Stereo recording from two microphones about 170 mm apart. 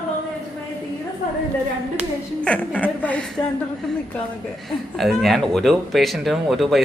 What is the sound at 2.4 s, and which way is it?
Speech, 5° left (ahead or behind).